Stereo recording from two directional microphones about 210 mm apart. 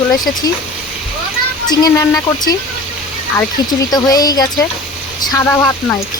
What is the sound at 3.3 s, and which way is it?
Speech, 20° left (ahead or behind).